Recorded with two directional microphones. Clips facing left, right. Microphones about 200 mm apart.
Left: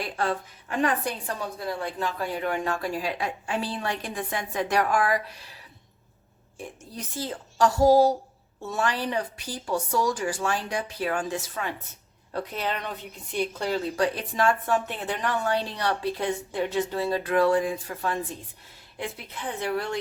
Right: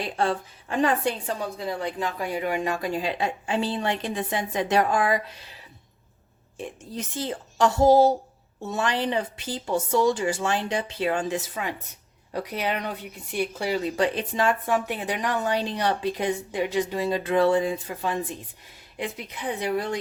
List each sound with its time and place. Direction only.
0.0 s a woman's voice: 25° right (ahead or behind)
6.6 s a woman's voice: 20° right (ahead or behind)